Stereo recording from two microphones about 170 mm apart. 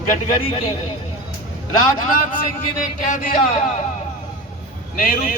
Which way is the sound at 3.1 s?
55° left (ahead or behind).